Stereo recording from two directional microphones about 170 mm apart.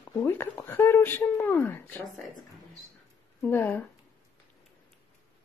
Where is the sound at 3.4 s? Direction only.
10° left (ahead or behind).